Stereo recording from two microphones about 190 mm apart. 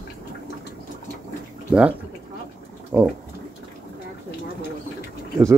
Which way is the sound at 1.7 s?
10° right (ahead or behind).